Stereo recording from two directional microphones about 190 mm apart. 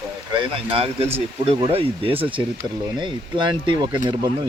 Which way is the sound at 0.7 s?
30° right (ahead or behind).